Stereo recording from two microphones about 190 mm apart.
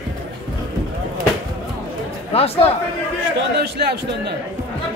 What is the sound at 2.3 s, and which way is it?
Speech, 30° left (ahead or behind).